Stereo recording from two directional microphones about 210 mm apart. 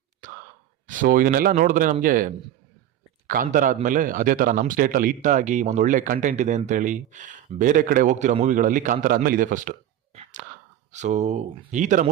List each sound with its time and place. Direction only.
0.9 s a man's voice: 40° right (ahead or behind)
10.9 s a man's voice: 35° right (ahead or behind)